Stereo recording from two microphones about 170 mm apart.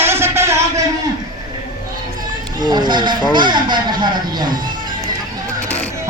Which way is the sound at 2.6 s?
25° right (ahead or behind).